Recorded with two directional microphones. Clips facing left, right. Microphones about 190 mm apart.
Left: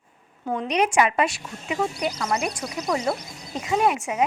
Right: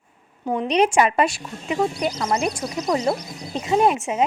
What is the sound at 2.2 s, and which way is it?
Speech, 30° right (ahead or behind).